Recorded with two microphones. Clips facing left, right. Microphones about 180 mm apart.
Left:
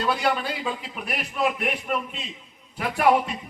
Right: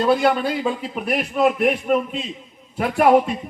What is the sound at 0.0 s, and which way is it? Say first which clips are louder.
A man's voice: right 7 dB; 45° right (ahead or behind).